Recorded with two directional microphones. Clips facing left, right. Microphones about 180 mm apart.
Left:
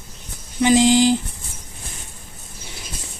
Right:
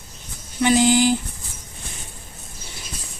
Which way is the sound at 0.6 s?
20° left (ahead or behind).